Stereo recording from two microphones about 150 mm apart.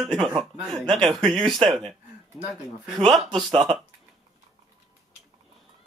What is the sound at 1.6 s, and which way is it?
Speech, 35° right (ahead or behind).